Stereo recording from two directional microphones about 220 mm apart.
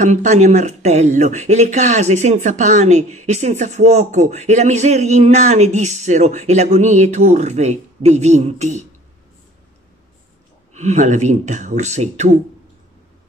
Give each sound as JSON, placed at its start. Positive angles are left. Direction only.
{"t": 0.0, "sound": "speech", "side_deg": -35}
{"t": 10.7, "sound": "speech", "side_deg": -30}